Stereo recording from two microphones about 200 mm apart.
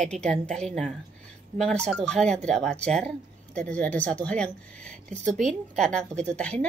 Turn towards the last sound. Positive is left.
turn(degrees=5)  # may be behind; listen again after turning